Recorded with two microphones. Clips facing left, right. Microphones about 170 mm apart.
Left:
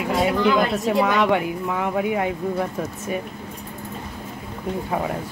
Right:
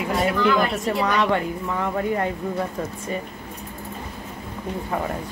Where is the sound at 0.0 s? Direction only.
5° left (ahead or behind).